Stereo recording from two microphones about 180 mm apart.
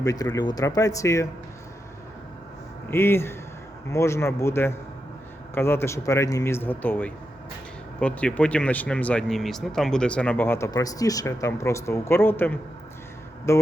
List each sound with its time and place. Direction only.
0.0 s speech: 20° left (ahead or behind)
2.9 s speech: 15° left (ahead or behind)